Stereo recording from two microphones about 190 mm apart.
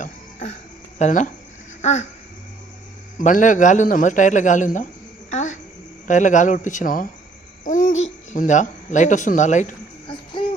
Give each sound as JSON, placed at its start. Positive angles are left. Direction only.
{"t": 0.0, "sound": "music", "side_deg": 35}
{"t": 0.9, "sound": "a man's voice", "side_deg": 40}
{"t": 1.8, "sound": "a sound", "side_deg": 35}
{"t": 3.2, "sound": "a man's voice", "side_deg": 45}
{"t": 5.3, "sound": "a sound", "side_deg": 40}
{"t": 6.1, "sound": "a man's voice", "side_deg": 40}
{"t": 7.6, "sound": "hoot", "side_deg": 40}
{"t": 8.3, "sound": "a man's voice", "side_deg": 40}
{"t": 10.1, "sound": "a sound", "side_deg": 25}